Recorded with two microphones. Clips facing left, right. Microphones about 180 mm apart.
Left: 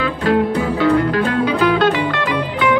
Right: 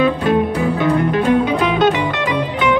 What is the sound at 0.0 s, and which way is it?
Music, 20° right (ahead or behind).